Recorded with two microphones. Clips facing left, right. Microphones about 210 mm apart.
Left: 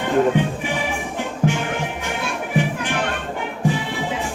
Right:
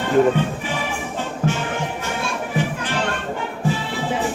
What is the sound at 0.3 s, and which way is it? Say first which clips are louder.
Music: left 2 dB; 15° left (ahead or behind).